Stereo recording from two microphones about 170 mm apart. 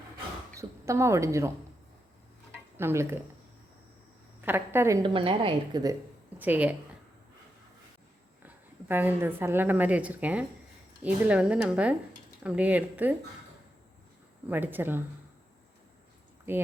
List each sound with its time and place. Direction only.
0.9 s speech: 15° right (ahead or behind)
2.7 s speech: 15° right (ahead or behind)
4.4 s a woman's voice: 15° right (ahead or behind)
5.0 s a woman's voice: 30° right (ahead or behind)
6.4 s speech: 10° right (ahead or behind)
8.4 s a woman's voice: 10° right (ahead or behind)
14.4 s speech: 10° right (ahead or behind)
16.5 s speech: 10° right (ahead or behind)